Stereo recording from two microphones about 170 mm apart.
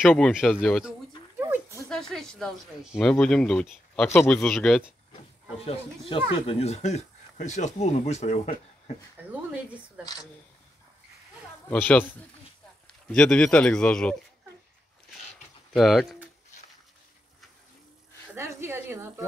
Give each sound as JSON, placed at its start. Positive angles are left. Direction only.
{"t": 0.3, "sound": "speech", "side_deg": -5}
{"t": 1.4, "sound": "a sound", "side_deg": -15}
{"t": 1.9, "sound": "speech", "side_deg": 0}
{"t": 5.7, "sound": "speech", "side_deg": 30}
{"t": 9.3, "sound": "speech", "side_deg": -10}
{"t": 11.7, "sound": "a man's voice", "side_deg": 10}
{"t": 15.7, "sound": "speech", "side_deg": 0}
{"t": 18.3, "sound": "speech", "side_deg": -15}